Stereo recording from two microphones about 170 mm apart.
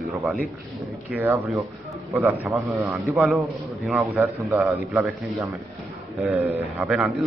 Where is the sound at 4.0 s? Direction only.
20° right (ahead or behind).